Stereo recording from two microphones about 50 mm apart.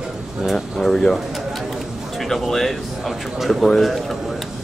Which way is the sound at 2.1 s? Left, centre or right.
Centre.